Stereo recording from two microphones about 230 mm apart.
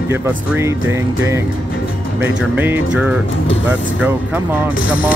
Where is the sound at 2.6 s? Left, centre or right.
Centre.